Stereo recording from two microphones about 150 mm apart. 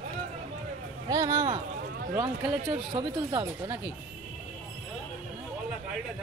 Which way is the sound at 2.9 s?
35° right (ahead or behind).